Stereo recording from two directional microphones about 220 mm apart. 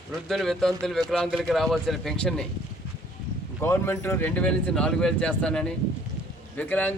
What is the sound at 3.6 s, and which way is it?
A man's voice, 10° left (ahead or behind).